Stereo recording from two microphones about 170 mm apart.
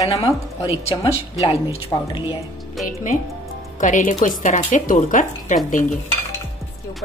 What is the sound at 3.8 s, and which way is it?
Speech, 50° left (ahead or behind).